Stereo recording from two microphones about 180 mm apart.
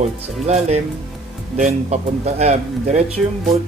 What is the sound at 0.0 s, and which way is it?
Speech, 40° right (ahead or behind).